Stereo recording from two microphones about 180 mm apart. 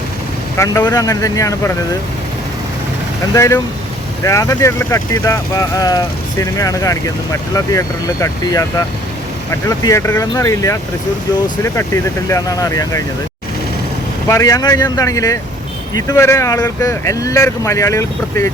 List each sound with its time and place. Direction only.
0.5 s speech: 15° left (ahead or behind)
3.3 s speech: 15° left (ahead or behind)
9.6 s speech: 15° left (ahead or behind)
12.3 s speech: 15° left (ahead or behind)
14.3 s speech: 20° left (ahead or behind)